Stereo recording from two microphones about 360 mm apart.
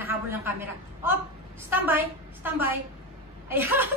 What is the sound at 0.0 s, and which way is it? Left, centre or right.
A man's voice, centre.